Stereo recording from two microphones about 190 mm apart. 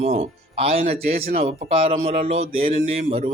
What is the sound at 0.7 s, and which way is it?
Speech, 50° right (ahead or behind).